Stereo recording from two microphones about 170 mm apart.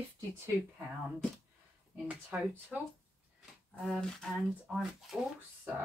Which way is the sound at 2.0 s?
10° right (ahead or behind).